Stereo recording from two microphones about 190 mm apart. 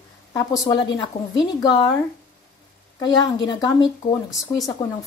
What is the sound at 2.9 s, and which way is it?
Speech, 20° left (ahead or behind).